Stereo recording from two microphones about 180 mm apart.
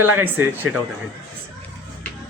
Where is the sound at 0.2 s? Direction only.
10° right (ahead or behind).